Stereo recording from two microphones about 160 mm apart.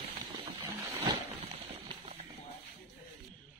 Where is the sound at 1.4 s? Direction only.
40° right (ahead or behind).